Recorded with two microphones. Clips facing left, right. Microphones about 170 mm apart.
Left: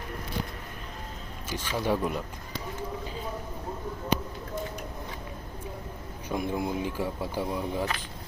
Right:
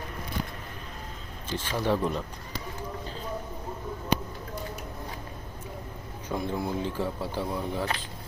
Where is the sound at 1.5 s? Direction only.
10° left (ahead or behind).